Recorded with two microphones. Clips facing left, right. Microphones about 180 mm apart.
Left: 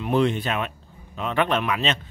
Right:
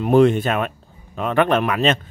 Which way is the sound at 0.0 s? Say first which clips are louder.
Right 7 dB; 50° right (ahead or behind).